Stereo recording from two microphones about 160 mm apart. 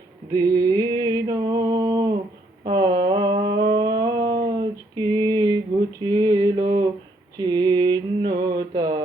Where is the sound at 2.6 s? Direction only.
30° right (ahead or behind).